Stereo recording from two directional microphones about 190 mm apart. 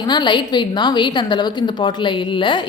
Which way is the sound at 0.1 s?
25° left (ahead or behind).